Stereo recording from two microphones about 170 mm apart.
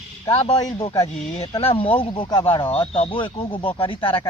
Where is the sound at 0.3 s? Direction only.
40° left (ahead or behind).